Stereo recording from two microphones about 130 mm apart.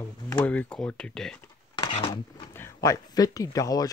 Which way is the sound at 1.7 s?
40° left (ahead or behind).